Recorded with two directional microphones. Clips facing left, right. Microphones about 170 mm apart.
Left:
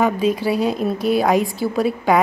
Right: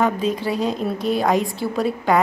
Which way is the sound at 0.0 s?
10° left (ahead or behind).